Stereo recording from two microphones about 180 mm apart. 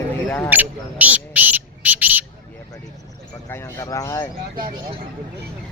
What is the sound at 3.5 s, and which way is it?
Speech, 15° left (ahead or behind).